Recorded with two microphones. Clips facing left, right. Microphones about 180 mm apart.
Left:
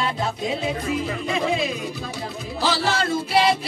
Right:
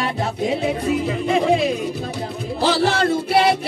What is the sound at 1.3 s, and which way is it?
Music, 60° right (ahead or behind).